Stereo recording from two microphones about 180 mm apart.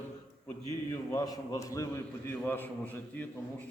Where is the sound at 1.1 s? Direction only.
20° left (ahead or behind).